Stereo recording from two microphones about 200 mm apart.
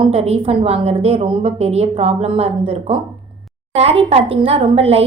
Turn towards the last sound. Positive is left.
turn(degrees=-30)  # may be behind; listen again after turning